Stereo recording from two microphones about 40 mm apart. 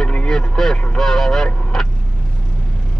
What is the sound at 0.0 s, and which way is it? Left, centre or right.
Vehicle, left.